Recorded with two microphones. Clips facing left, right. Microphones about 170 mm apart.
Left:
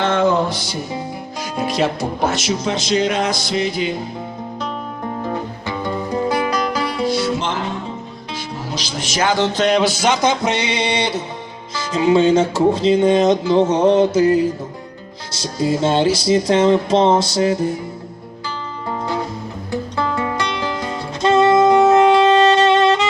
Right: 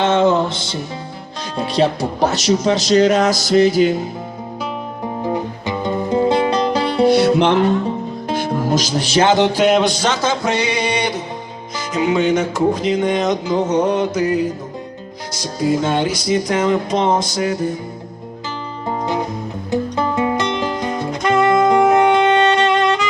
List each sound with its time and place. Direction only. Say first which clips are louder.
0.0 s music: right 2 dB; 20° right (ahead or behind)
1.6 s speech: right 3 dB; 35° right (ahead or behind)
5.2 s music: right 6 dB; 15° right (ahead or behind)
7.0 s music: right 9 dB; 60° right (ahead or behind)
8.3 s speech: right 10 dB; 55° right (ahead or behind); by 14.1 s 25° left (ahead or behind)
15.3 s speech: right 1 dB; 25° left (ahead or behind)
18.9 s music: right 2 dB; 20° right (ahead or behind)
21.1 s saxophone: left 2 dB; 25° left (ahead or behind)
22.2 s music: left 2 dB; 30° left (ahead or behind)